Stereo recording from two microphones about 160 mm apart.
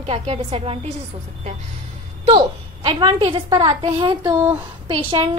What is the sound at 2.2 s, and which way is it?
A woman's voice, 35° right (ahead or behind).